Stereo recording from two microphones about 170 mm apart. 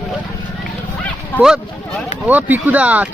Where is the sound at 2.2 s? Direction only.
10° right (ahead or behind).